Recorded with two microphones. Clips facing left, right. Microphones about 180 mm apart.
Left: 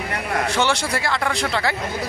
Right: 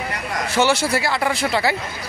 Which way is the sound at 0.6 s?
5° right (ahead or behind).